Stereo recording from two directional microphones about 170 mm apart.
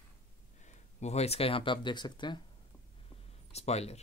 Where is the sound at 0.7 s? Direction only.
40° left (ahead or behind).